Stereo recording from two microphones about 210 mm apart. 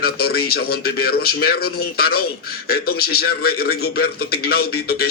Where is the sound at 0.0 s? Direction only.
50° left (ahead or behind).